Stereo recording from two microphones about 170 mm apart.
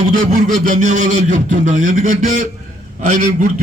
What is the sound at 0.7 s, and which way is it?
A man's voice, 45° right (ahead or behind).